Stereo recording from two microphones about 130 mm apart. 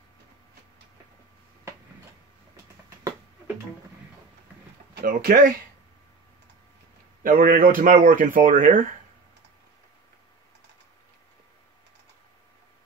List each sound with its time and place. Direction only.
5.0 s speech: 90° right
7.2 s speech: 90° right